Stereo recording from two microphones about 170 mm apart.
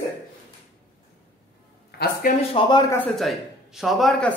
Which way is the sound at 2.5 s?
25° left (ahead or behind).